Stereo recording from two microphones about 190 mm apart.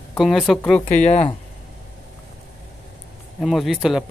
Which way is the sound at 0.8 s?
35° left (ahead or behind).